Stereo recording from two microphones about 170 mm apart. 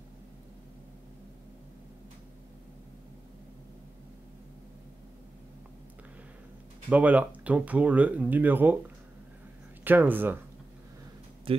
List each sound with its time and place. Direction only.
6.9 s speech: 10° right (ahead or behind)
9.8 s speech: 10° right (ahead or behind)
11.5 s speech: 35° right (ahead or behind)